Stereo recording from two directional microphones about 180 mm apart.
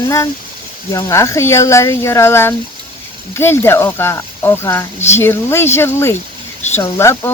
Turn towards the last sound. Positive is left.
turn(degrees=15)  # may be behind; listen again after turning